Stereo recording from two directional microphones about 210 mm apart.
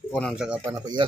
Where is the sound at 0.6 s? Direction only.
20° right (ahead or behind).